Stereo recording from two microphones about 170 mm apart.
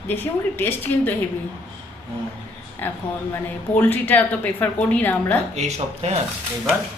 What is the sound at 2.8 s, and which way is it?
A woman's voice, 10° left (ahead or behind).